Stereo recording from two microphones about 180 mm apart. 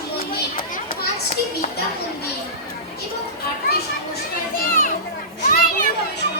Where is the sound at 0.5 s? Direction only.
45° left (ahead or behind).